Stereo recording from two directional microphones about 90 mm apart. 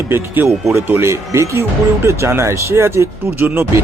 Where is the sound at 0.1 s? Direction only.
25° right (ahead or behind).